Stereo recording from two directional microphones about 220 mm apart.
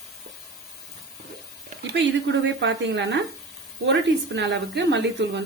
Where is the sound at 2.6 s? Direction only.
55° right (ahead or behind).